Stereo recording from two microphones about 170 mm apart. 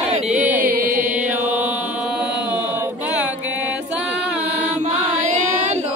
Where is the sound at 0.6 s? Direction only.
55° right (ahead or behind).